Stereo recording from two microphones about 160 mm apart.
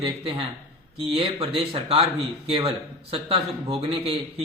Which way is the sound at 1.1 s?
35° right (ahead or behind).